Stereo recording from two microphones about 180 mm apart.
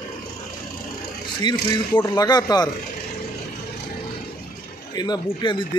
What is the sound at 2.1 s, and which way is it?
Speech, 20° left (ahead or behind).